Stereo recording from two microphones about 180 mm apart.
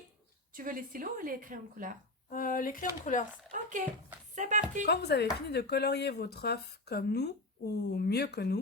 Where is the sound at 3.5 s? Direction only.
45° right (ahead or behind).